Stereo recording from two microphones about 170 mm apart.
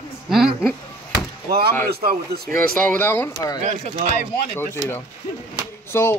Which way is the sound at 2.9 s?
10° left (ahead or behind).